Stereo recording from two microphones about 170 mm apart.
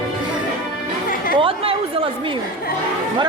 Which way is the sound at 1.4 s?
30° right (ahead or behind).